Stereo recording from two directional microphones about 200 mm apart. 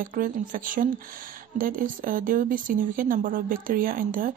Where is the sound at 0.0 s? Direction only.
45° right (ahead or behind).